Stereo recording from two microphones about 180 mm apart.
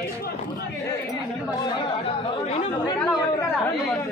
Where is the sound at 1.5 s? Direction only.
25° left (ahead or behind).